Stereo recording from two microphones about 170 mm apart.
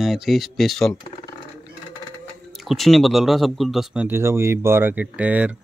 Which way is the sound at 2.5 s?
Centre (ahead or behind).